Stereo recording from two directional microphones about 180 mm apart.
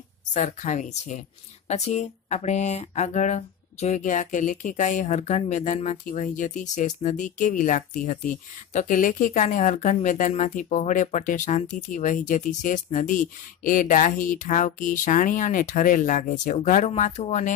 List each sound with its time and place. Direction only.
0.3 s speech: 45° left (ahead or behind)